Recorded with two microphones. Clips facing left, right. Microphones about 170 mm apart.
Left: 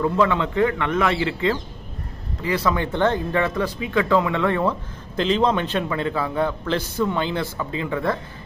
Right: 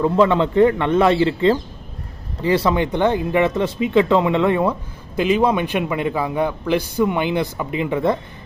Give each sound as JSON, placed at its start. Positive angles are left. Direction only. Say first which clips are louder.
{"t": 0.0, "sound": "speech", "louder": "right 4 dB", "side_deg": -30}